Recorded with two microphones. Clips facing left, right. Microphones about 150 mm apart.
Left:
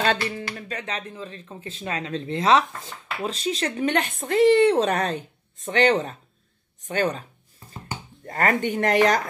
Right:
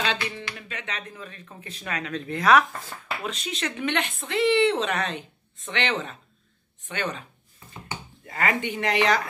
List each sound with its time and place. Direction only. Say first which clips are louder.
0.0 s speech: left 5 dB; 45° left (ahead or behind)
8.3 s speech: left 4 dB; 45° left (ahead or behind)